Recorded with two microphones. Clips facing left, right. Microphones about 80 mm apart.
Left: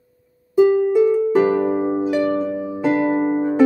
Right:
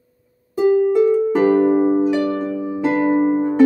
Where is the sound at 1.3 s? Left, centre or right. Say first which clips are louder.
Right 2 dB; centre.